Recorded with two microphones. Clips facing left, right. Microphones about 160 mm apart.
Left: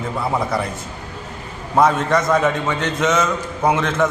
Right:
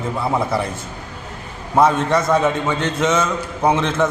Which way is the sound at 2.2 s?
Centre (ahead or behind).